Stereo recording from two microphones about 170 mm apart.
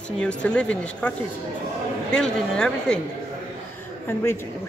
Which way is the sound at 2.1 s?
5° left (ahead or behind).